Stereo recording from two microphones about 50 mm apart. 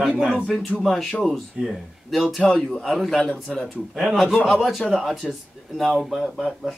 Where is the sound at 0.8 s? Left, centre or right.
Centre.